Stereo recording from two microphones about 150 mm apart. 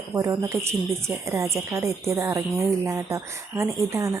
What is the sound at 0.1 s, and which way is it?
A woman's voice, 20° right (ahead or behind).